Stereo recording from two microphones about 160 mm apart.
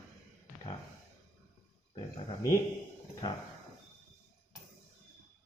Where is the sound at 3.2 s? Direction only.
25° left (ahead or behind).